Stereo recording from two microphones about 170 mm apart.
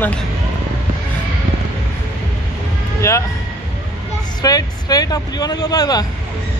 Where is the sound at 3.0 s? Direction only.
15° left (ahead or behind).